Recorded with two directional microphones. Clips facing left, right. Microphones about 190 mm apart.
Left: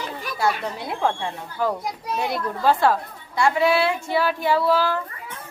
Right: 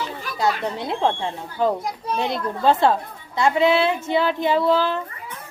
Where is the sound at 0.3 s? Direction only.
20° right (ahead or behind).